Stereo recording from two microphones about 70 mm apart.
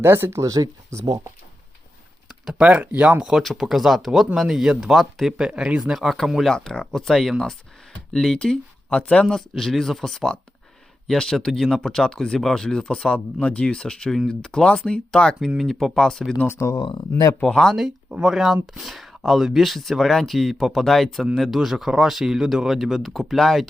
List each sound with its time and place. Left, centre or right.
0.0 s speech: right
0.4 s speech: right
2.4 s speech: centre
2.6 s speech: centre
5.5 s speech: centre
9.3 s speech: centre
15.4 s speech: centre
16.5 s speech: left
16.7 s speech: left
17.4 s speech: centre
17.7 s speech: centre